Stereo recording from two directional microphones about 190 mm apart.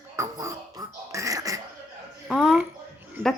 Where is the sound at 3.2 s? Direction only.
10° right (ahead or behind).